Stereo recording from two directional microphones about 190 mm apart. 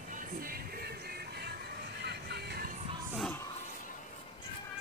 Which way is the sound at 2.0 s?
60° right (ahead or behind).